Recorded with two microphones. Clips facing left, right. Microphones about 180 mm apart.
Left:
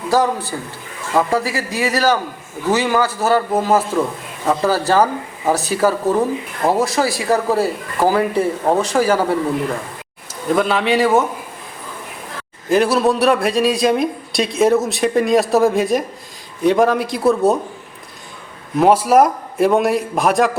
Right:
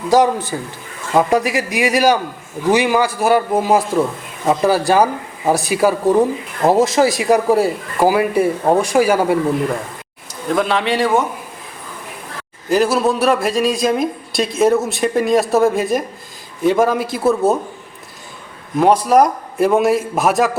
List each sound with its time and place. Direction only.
0.1 s a man's voice: 20° right (ahead or behind)
6.6 s speech: 25° right (ahead or behind)
10.5 s a man's voice: centre (ahead or behind)
12.6 s a man's voice: centre (ahead or behind)
18.8 s a man's voice: 5° left (ahead or behind)